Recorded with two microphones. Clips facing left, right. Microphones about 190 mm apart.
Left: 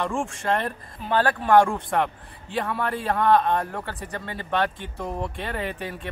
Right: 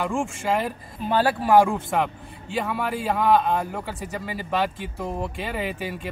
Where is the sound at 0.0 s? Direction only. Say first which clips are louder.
Right 1 dB; centre (ahead or behind).